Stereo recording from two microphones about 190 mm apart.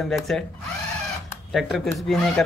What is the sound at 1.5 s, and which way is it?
Speech, centre (ahead or behind).